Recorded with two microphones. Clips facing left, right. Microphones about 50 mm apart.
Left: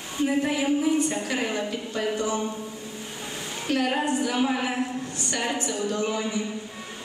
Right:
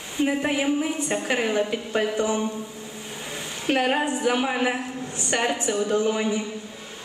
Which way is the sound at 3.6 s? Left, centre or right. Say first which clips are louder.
Right 2 dB; right.